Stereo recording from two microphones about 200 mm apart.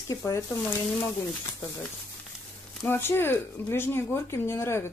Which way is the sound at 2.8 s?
10° left (ahead or behind).